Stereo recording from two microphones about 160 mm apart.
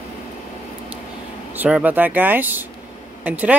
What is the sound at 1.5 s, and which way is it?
Speech, 10° right (ahead or behind).